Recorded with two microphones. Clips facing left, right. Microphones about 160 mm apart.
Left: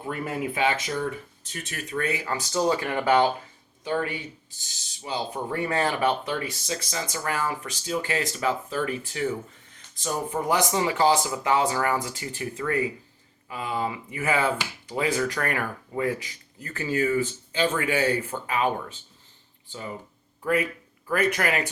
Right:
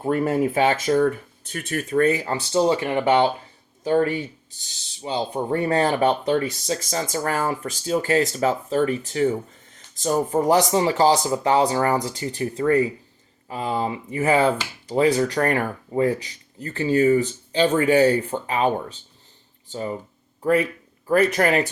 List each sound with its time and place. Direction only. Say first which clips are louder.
0.0 s speech: right 9 dB; 45° right (ahead or behind); by 3.2 s 25° right (ahead or behind)
3.8 s speech: right 8 dB; 40° right (ahead or behind)
5.0 s speech: right 5 dB; 30° right (ahead or behind)